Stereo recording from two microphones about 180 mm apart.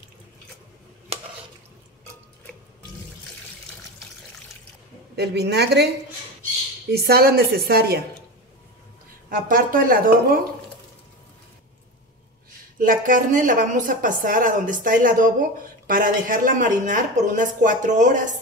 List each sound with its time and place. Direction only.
5.1 s a woman's voice: 65° right (ahead or behind)
6.9 s a woman's voice: 60° right (ahead or behind)
9.3 s a woman's voice: 50° right (ahead or behind)
12.7 s a woman's voice: 50° right (ahead or behind)